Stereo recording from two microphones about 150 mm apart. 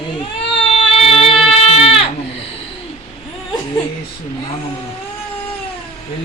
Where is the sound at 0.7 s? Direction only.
40° left (ahead or behind).